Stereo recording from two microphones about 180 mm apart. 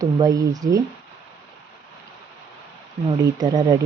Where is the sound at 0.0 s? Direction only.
20° right (ahead or behind).